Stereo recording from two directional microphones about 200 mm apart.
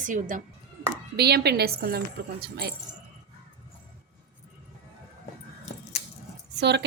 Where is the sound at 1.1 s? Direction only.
55° right (ahead or behind).